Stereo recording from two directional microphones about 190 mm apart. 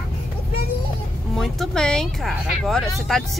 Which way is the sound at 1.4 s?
Centre (ahead or behind).